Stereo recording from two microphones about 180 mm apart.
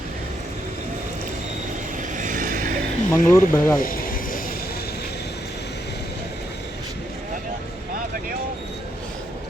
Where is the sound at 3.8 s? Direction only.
50° left (ahead or behind).